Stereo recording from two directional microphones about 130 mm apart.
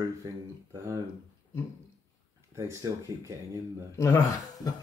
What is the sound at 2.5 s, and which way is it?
Speech, 25° right (ahead or behind).